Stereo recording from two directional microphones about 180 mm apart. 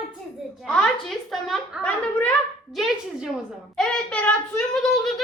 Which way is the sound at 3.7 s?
5° left (ahead or behind).